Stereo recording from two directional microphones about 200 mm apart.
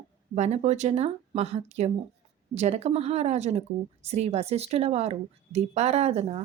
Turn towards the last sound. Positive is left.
turn(degrees=-30)  # may be behind; listen again after turning